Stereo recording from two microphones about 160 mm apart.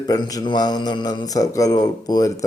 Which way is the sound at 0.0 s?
25° left (ahead or behind).